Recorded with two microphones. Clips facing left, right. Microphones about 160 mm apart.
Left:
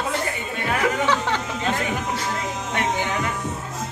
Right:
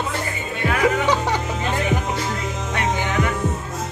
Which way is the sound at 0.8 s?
15° right (ahead or behind).